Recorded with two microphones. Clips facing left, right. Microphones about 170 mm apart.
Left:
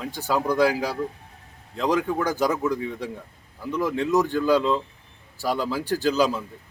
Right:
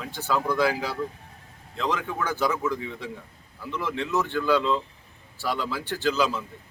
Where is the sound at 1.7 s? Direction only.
40° left (ahead or behind).